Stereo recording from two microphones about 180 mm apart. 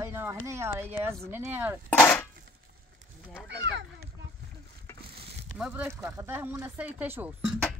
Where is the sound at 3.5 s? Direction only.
65° right (ahead or behind).